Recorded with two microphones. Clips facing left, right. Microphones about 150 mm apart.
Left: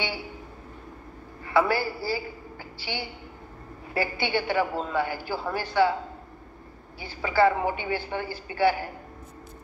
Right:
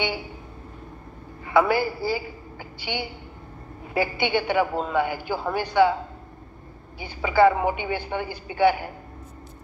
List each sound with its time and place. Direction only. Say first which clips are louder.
1.6 s a man's voice: right 3 dB; 15° right (ahead or behind)
7.0 s a man's voice: right 4 dB; 15° right (ahead or behind)